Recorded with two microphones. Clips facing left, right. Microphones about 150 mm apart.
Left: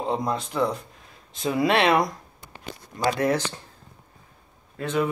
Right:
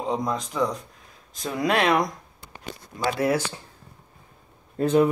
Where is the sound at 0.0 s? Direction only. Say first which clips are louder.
Even; centre (ahead or behind).